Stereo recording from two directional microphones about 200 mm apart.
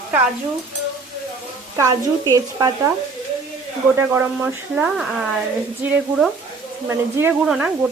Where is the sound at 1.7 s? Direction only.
15° right (ahead or behind).